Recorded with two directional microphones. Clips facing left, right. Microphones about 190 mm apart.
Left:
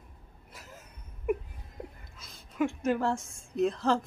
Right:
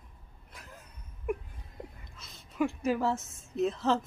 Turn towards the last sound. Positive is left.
turn(degrees=-5)  # may be behind; listen again after turning